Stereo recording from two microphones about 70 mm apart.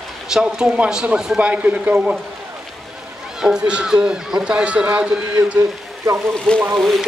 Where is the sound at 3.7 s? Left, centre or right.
Centre.